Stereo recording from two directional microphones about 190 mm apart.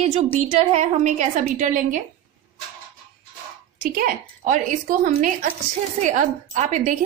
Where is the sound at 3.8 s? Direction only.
50° right (ahead or behind).